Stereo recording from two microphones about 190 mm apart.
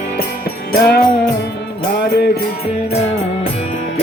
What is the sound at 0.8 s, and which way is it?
Music, 55° left (ahead or behind).